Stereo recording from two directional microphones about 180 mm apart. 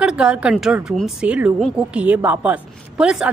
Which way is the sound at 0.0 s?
5° right (ahead or behind).